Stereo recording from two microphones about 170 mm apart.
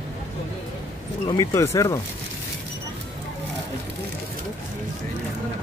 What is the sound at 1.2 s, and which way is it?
Speech, 25° left (ahead or behind).